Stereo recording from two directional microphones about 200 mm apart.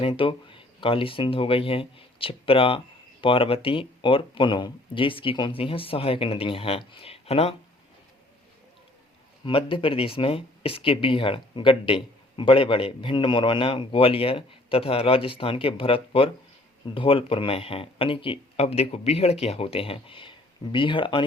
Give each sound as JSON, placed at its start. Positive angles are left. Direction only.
{"t": 0.0, "sound": "speech", "side_deg": 25}
{"t": 9.4, "sound": "speech", "side_deg": 25}